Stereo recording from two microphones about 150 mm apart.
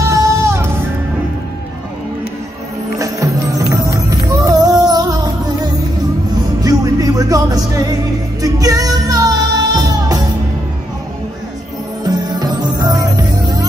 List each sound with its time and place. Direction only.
0.1 s music: 20° right (ahead or behind)
3.0 s music: 20° right (ahead or behind)
12.0 s music: 25° right (ahead or behind)